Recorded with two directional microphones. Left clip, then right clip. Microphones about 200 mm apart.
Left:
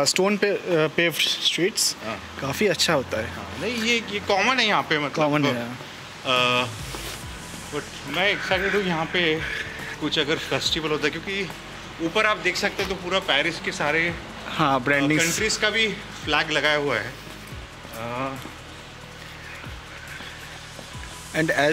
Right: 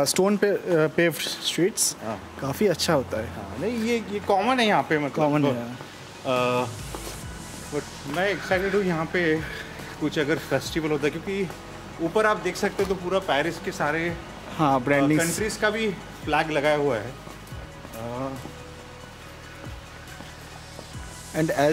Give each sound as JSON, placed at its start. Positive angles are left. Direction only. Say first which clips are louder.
{"t": 0.0, "sound": "speech", "louder": "left 1 dB", "side_deg": -20}
{"t": 3.6, "sound": "speech", "louder": "left 3 dB", "side_deg": -40}
{"t": 6.2, "sound": "speech", "louder": "left 3 dB", "side_deg": -40}
{"t": 8.2, "sound": "speech", "louder": "left 2 dB", "side_deg": -55}
{"t": 14.6, "sound": "speech", "louder": "even", "side_deg": -5}
{"t": 15.4, "sound": "speech", "louder": "left 3 dB", "side_deg": -50}
{"t": 21.3, "sound": "speech", "louder": "left 2 dB", "side_deg": -10}